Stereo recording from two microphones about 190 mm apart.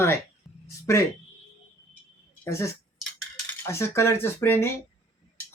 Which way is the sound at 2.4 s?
15° left (ahead or behind).